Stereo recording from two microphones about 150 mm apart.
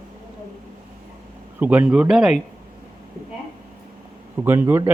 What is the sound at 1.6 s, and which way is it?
Speech, 10° right (ahead or behind).